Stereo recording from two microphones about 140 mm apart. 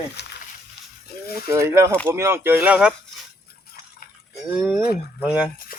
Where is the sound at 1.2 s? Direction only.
90° left.